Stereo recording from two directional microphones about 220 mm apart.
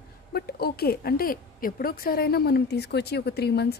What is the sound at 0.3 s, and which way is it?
Speech, 45° left (ahead or behind).